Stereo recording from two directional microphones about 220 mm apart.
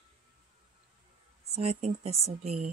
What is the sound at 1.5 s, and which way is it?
Speech, 30° right (ahead or behind).